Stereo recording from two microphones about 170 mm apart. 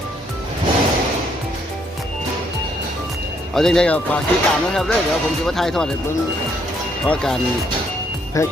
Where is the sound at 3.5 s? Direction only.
5° left (ahead or behind).